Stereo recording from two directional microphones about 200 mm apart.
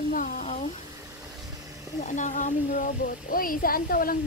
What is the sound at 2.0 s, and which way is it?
Speech, 40° left (ahead or behind).